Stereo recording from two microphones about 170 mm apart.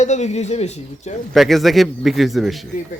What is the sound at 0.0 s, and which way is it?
Speech, 45° left (ahead or behind).